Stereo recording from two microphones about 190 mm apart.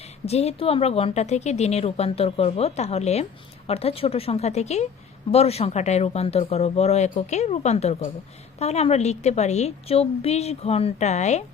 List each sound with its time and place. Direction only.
0.0 s a woman's voice: 35° left (ahead or behind)